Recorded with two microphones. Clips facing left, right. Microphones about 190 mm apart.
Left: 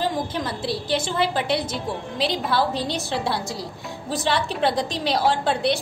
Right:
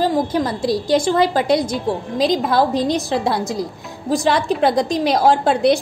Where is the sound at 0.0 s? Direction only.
40° right (ahead or behind).